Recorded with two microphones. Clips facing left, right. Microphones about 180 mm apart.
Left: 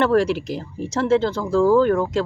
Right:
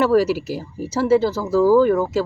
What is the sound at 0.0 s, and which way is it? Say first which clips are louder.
Speech: right 1 dB; 5° right (ahead or behind).